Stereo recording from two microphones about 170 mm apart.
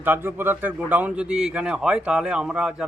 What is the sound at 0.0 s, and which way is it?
A man's voice, 10° right (ahead or behind).